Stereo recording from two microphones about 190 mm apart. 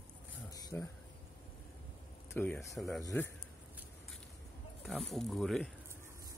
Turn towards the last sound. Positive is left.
turn(degrees=0)  # may be behind; listen again after turning